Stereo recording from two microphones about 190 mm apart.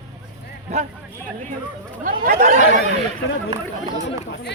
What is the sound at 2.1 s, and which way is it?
Speech, 45° right (ahead or behind).